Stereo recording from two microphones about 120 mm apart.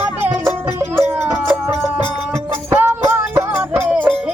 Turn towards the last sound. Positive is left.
turn(degrees=-15)  # may be behind; listen again after turning